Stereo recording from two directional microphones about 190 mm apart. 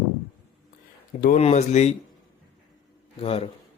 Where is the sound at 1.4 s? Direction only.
35° left (ahead or behind).